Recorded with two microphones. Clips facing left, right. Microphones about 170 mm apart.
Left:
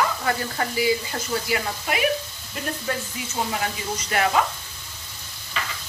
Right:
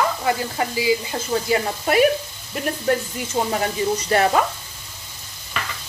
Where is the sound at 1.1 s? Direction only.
30° right (ahead or behind).